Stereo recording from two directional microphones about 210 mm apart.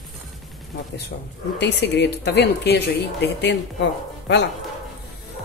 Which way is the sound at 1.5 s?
55° left (ahead or behind).